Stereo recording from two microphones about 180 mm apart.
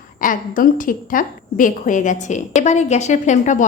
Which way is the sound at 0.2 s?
50° left (ahead or behind).